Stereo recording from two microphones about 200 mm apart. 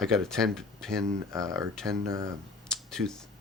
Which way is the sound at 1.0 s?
15° right (ahead or behind).